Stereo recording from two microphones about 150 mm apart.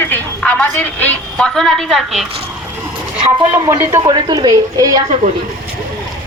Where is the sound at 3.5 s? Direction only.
20° right (ahead or behind).